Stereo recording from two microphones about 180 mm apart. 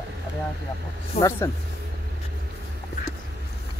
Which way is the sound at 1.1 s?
35° left (ahead or behind).